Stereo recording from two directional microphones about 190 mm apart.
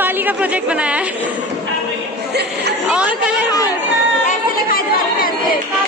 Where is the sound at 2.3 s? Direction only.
60° right (ahead or behind).